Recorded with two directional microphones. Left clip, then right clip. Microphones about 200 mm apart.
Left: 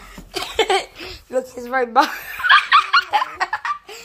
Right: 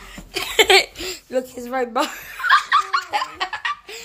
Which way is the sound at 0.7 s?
25° right (ahead or behind).